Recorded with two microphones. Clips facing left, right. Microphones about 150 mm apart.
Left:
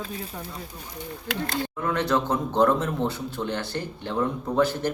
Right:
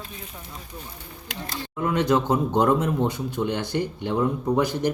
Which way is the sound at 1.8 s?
15° right (ahead or behind).